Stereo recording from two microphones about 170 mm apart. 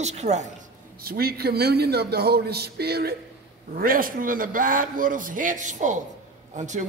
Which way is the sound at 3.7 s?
55° right (ahead or behind).